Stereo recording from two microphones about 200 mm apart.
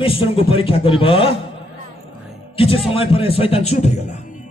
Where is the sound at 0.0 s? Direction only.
30° left (ahead or behind).